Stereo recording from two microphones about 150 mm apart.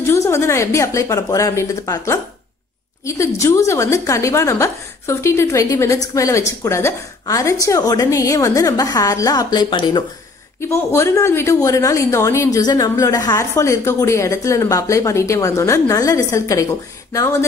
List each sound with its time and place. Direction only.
0.0 s a woman's voice: 20° left (ahead or behind)
10.6 s a woman's voice: 15° left (ahead or behind)